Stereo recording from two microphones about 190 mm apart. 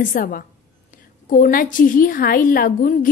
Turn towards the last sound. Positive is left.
turn(degrees=45)  # may be behind; listen again after turning